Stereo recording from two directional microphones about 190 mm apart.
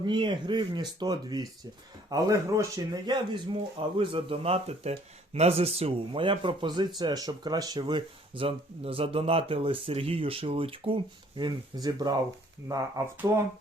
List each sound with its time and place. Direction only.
0.0 s speech: 25° right (ahead or behind)